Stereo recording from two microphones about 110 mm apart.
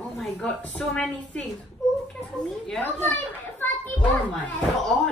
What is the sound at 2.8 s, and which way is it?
Speech, 20° left (ahead or behind).